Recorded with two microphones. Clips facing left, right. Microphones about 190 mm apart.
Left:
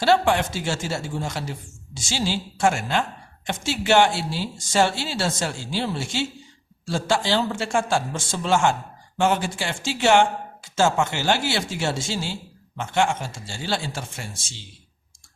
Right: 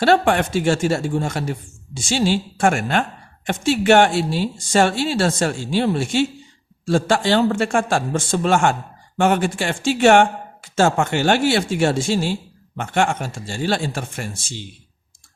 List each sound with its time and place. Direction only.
0.0 s a man's voice: 55° right (ahead or behind)